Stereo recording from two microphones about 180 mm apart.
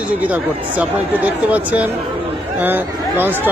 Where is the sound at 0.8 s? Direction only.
10° right (ahead or behind).